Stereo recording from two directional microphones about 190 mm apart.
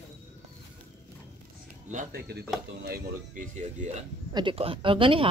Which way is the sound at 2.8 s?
45° right (ahead or behind).